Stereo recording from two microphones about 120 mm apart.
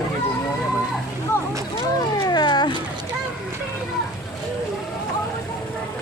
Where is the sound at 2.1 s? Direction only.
35° left (ahead or behind).